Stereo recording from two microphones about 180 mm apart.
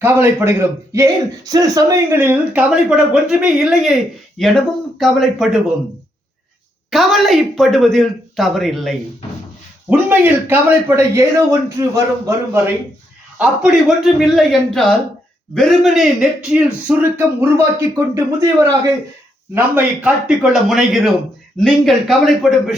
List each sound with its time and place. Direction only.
0.0 s speech: 15° right (ahead or behind)
6.9 s speech: centre (ahead or behind)
9.9 s speech: 15° right (ahead or behind)
13.4 s speech: 5° right (ahead or behind)
19.5 s speech: 10° right (ahead or behind)